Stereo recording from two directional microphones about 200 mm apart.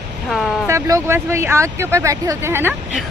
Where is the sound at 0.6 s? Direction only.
15° right (ahead or behind).